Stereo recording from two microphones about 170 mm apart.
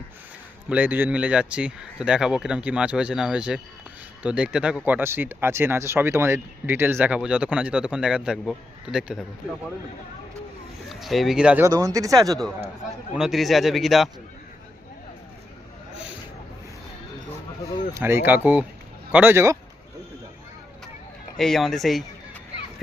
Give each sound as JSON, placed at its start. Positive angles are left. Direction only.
{"t": 0.7, "sound": "speech", "side_deg": -10}
{"t": 10.8, "sound": "speech", "side_deg": 0}
{"t": 11.6, "sound": "speech", "side_deg": -20}
{"t": 13.1, "sound": "a man's voice", "side_deg": 0}
{"t": 17.9, "sound": "speech", "side_deg": -15}
{"t": 21.3, "sound": "a man's voice", "side_deg": 0}